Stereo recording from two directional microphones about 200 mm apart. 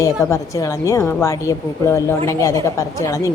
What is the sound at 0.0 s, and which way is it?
A woman's voice, 15° left (ahead or behind).